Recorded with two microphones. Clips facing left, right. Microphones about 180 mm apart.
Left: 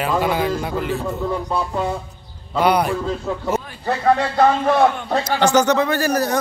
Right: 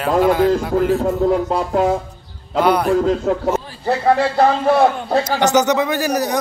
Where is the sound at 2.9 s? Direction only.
90° right.